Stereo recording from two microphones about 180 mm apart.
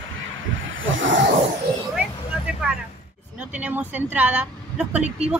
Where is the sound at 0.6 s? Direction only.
90° right.